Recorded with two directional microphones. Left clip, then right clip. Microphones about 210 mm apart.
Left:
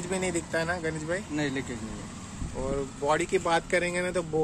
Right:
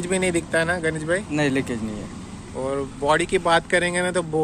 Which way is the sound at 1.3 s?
45° right (ahead or behind).